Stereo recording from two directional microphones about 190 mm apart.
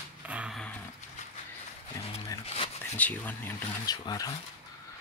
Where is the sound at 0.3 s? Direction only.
5° right (ahead or behind).